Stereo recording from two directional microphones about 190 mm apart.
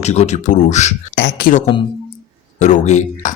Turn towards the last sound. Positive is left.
turn(degrees=40)  # may be behind; listen again after turning